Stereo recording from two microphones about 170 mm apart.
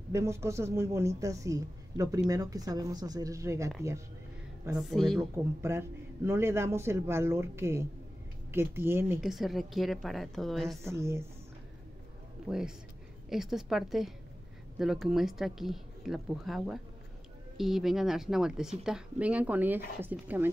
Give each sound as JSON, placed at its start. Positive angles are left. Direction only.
{"t": 0.1, "sound": "speech", "side_deg": -15}
{"t": 4.7, "sound": "a woman's voice", "side_deg": 0}
{"t": 5.6, "sound": "a man's voice", "side_deg": -15}
{"t": 9.2, "sound": "a woman's voice", "side_deg": 0}
{"t": 10.8, "sound": "a man's voice", "side_deg": -15}
{"t": 12.4, "sound": "a woman's voice", "side_deg": -5}